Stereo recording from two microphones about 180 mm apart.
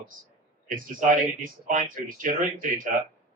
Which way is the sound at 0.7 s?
45° right (ahead or behind).